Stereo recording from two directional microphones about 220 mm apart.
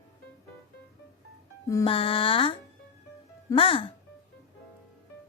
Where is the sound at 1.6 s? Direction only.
15° left (ahead or behind).